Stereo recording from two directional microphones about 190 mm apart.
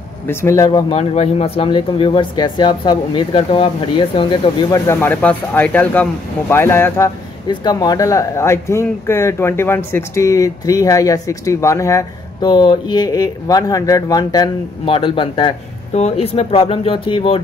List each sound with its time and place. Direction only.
0.3 s speech: 15° left (ahead or behind)